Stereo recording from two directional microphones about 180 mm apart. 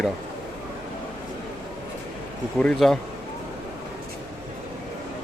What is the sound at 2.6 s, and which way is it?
Speech, 5° left (ahead or behind).